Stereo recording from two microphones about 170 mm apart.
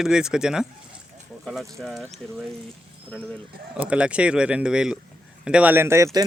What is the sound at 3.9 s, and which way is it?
A man's voice, 5° right (ahead or behind).